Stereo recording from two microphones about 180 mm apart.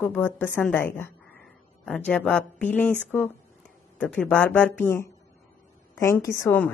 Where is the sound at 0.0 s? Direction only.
10° left (ahead or behind).